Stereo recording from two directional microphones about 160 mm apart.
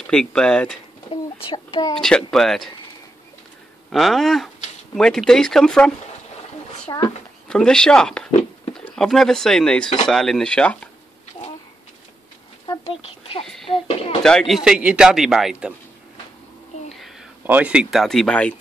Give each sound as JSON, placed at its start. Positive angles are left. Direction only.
{"t": 0.0, "sound": "speech", "side_deg": 5}
{"t": 1.1, "sound": "a child's voice", "side_deg": 30}
{"t": 2.0, "sound": "speech", "side_deg": 5}
{"t": 3.9, "sound": "speech", "side_deg": 0}
{"t": 6.9, "sound": "speech", "side_deg": 25}
{"t": 7.4, "sound": "speech", "side_deg": 5}
{"t": 12.6, "sound": "a sound", "side_deg": 35}
{"t": 13.7, "sound": "speech", "side_deg": 35}
{"t": 14.2, "sound": "speech", "side_deg": 0}
{"t": 17.5, "sound": "speech", "side_deg": -10}